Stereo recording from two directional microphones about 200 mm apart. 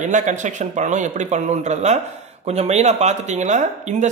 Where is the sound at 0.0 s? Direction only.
40° right (ahead or behind).